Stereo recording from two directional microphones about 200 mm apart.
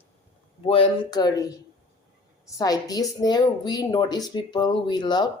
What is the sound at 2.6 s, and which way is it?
Speech, 15° left (ahead or behind).